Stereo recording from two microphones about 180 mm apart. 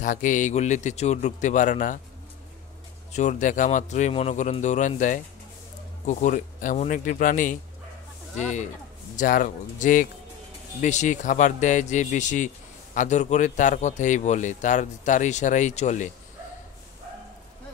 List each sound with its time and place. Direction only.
0.0 s a man's voice: 45° left (ahead or behind)
3.1 s a man's voice: 40° left (ahead or behind)